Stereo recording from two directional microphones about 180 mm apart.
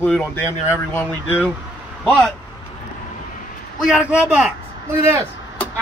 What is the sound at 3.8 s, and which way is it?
A man's voice, 5° right (ahead or behind).